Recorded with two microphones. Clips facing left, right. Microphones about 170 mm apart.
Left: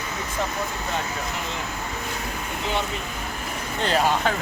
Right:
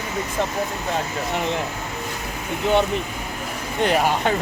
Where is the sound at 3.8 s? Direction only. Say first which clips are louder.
Right 2 dB; 15° right (ahead or behind).